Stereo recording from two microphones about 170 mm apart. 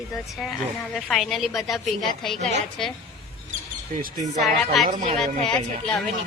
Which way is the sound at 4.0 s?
45° right (ahead or behind).